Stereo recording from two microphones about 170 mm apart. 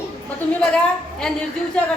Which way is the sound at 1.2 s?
5° left (ahead or behind).